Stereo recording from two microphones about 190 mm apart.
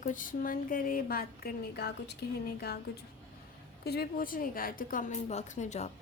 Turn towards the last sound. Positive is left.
turn(degrees=35)  # may be behind; listen again after turning